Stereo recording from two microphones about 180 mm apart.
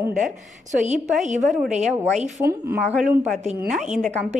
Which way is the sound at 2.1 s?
40° right (ahead or behind).